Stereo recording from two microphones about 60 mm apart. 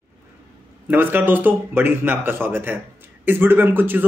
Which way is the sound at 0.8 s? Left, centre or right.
Right.